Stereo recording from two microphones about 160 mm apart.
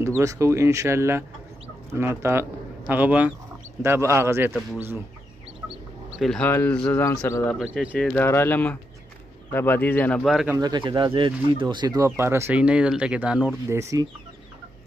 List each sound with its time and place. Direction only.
0.2 s speech: 20° right (ahead or behind)
6.1 s speech: 5° left (ahead or behind)
7.5 s speech: 5° right (ahead or behind)
7.9 s speech: 10° left (ahead or behind)
10.6 s speech: 30° right (ahead or behind); by 13.5 s 5° right (ahead or behind)
13.7 s speech: 20° right (ahead or behind)